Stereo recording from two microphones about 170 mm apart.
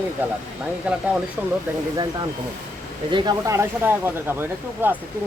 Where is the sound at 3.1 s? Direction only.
25° right (ahead or behind).